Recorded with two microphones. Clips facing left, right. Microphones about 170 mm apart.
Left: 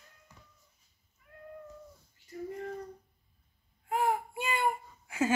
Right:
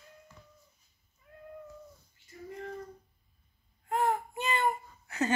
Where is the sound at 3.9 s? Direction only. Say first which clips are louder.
Even; 10° left (ahead or behind).